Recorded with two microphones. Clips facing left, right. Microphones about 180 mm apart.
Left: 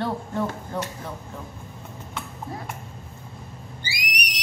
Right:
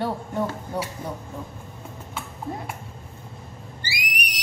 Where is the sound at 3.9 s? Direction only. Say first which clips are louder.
Right 1 dB; centre (ahead or behind).